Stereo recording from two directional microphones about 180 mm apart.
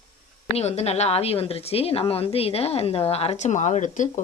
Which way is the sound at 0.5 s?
35° left (ahead or behind).